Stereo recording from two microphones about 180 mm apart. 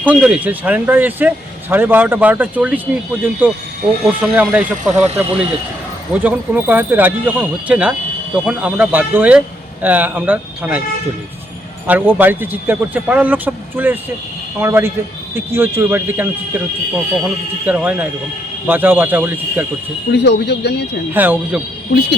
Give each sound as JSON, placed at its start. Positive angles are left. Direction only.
{"t": 0.0, "sound": "a man's voice", "side_deg": -5}
{"t": 11.9, "sound": "a man's voice", "side_deg": -10}
{"t": 20.1, "sound": "speech", "side_deg": 65}
{"t": 21.1, "sound": "a man's voice", "side_deg": -10}